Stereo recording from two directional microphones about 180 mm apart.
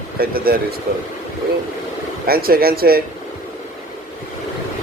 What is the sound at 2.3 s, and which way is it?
Speech, 55° right (ahead or behind).